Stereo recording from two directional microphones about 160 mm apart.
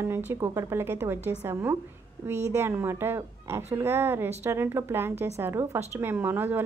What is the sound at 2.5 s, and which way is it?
A woman's voice, 15° right (ahead or behind).